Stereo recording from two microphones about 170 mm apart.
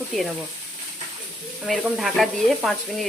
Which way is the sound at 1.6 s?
Centre (ahead or behind).